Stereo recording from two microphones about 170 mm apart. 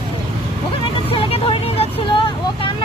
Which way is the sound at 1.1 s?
35° left (ahead or behind).